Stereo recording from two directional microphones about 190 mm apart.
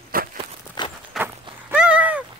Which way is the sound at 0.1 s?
50° right (ahead or behind).